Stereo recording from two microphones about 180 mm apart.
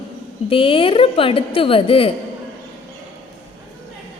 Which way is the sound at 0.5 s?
30° left (ahead or behind).